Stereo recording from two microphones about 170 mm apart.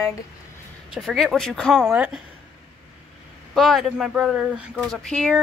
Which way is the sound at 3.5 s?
Centre (ahead or behind).